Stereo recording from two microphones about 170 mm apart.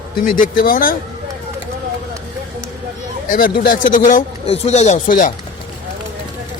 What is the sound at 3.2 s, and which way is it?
Speech, 55° left (ahead or behind).